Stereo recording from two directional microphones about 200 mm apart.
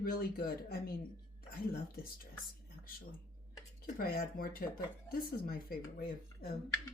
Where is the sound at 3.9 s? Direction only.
50° left (ahead or behind).